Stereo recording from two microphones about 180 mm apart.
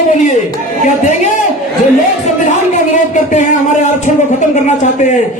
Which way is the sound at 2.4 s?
40° left (ahead or behind).